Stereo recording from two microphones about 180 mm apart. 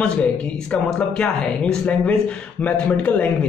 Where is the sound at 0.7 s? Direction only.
5° left (ahead or behind).